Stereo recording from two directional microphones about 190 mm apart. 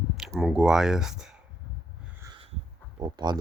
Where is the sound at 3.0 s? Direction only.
20° right (ahead or behind).